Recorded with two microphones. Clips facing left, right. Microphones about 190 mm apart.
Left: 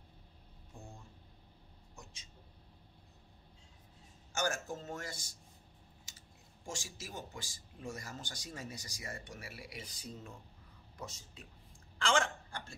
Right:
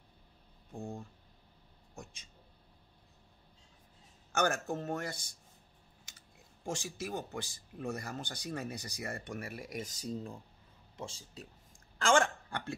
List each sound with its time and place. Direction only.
0.7 s a sound: 60° right (ahead or behind)
4.3 s speech: 60° right (ahead or behind)
6.6 s speech: 60° right (ahead or behind); by 11.4 s 30° right (ahead or behind)
12.0 s hiccup: 50° right (ahead or behind)